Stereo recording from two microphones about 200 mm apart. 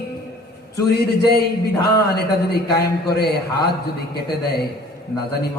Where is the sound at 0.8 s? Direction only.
55° left (ahead or behind).